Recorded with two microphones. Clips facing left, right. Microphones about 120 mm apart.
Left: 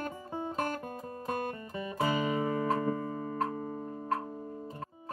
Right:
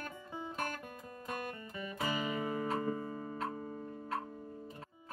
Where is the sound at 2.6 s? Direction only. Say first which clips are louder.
Left 5 dB; 90° left.